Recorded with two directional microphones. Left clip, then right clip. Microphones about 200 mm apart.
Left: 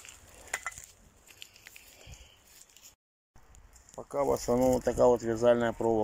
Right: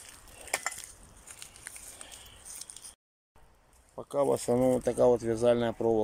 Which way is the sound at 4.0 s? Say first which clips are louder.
Right 1 dB; 5° right (ahead or behind).